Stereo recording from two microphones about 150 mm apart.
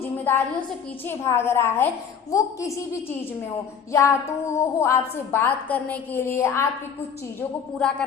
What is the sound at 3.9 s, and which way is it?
A woman's voice, 20° left (ahead or behind).